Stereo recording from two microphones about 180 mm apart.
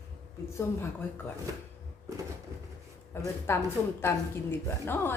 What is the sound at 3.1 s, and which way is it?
A woman's voice, 10° left (ahead or behind).